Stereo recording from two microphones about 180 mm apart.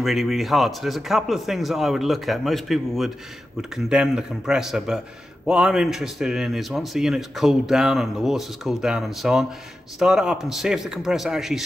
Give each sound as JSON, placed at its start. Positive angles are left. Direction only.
{"t": 0.0, "sound": "a man's voice", "side_deg": 0}